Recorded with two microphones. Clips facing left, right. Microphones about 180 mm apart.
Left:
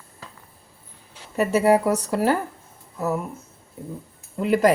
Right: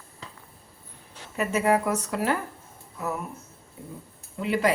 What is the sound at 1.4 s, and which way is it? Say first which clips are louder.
Speech: left 5 dB; 35° left (ahead or behind).